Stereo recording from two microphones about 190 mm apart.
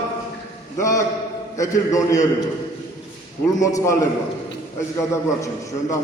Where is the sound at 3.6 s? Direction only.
15° left (ahead or behind).